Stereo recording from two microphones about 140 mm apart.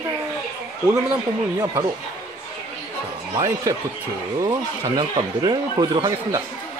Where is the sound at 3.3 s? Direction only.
25° right (ahead or behind).